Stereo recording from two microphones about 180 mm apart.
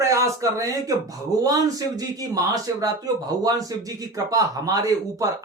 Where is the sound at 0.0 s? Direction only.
15° right (ahead or behind).